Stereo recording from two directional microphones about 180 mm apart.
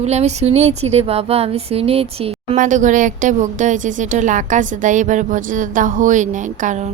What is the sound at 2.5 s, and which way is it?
Speech, 45° right (ahead or behind).